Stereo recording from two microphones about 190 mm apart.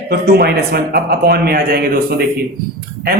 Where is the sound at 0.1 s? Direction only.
55° right (ahead or behind).